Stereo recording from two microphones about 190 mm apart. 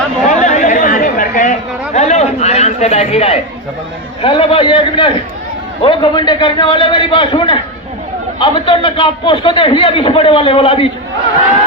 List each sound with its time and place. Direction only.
0.3 s chatter: 40° left (ahead or behind)
1.9 s a sound: 35° left (ahead or behind)
4.2 s a man's voice: 25° left (ahead or behind)